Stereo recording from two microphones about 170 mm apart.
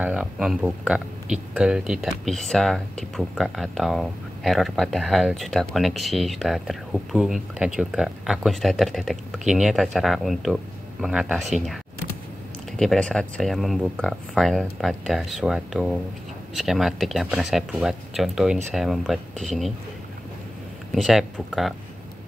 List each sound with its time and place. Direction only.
0.0 s speech: 5° right (ahead or behind)
20.9 s speech: centre (ahead or behind)